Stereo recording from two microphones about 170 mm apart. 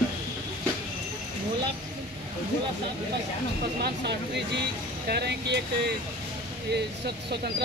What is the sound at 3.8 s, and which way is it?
Speech, 80° right.